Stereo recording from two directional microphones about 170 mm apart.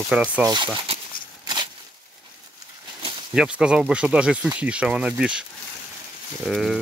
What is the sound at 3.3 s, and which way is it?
Speech, 5° right (ahead or behind).